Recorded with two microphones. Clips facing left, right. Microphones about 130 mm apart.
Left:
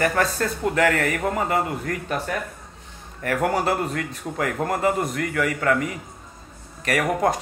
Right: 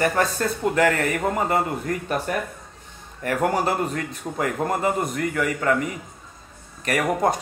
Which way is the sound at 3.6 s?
30° right (ahead or behind).